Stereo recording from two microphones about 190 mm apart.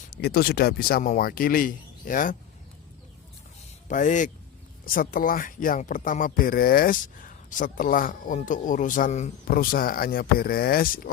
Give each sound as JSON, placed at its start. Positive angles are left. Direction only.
{"t": 0.1, "sound": "speech", "side_deg": 55}
{"t": 3.8, "sound": "speech", "side_deg": 40}
{"t": 9.5, "sound": "speech", "side_deg": 50}